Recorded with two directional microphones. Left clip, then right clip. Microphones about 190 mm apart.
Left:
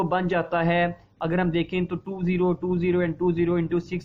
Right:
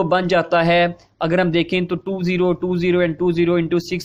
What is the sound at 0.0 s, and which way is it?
Speech, 40° right (ahead or behind).